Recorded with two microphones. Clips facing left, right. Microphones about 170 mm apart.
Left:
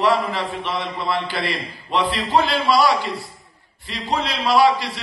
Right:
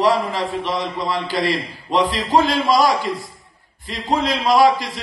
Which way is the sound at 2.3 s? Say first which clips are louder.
Right 2 dB; 45° right (ahead or behind).